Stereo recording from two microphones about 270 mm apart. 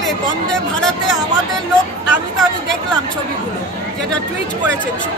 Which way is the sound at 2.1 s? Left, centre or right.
Centre.